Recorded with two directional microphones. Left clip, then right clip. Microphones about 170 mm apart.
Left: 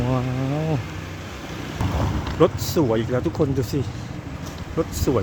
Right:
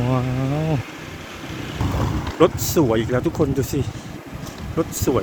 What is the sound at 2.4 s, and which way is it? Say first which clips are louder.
Speech: right 2 dB; centre (ahead or behind).